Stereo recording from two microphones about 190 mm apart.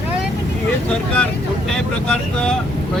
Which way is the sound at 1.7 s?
5° left (ahead or behind).